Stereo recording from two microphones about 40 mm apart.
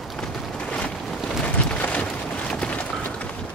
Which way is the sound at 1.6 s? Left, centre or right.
Left.